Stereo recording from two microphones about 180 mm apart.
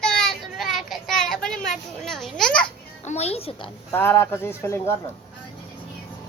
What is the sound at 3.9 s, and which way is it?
Speech, 10° left (ahead or behind).